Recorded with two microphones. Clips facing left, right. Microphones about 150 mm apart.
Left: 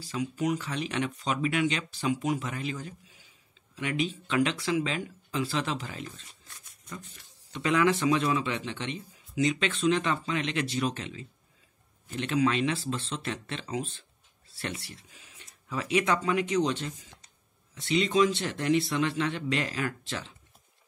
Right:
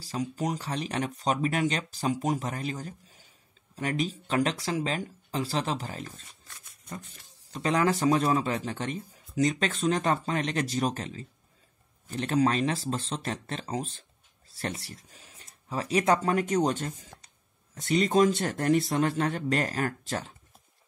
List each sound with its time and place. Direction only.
0.0 s speech: 35° right (ahead or behind)
7.5 s speech: 35° right (ahead or behind)